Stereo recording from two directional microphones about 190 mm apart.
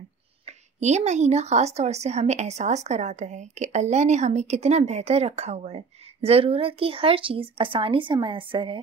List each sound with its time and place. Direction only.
0.5 s a woman's voice: 35° right (ahead or behind)